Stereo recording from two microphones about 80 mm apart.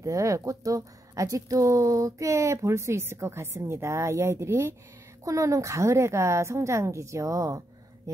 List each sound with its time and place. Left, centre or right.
0.0 s speech: right